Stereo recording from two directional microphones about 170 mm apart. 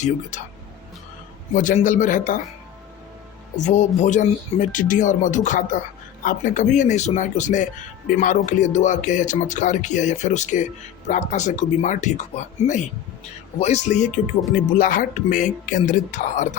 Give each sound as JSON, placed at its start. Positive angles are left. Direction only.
{"t": 0.0, "sound": "speech", "side_deg": 45}
{"t": 1.5, "sound": "speech", "side_deg": 50}
{"t": 3.6, "sound": "speech", "side_deg": 45}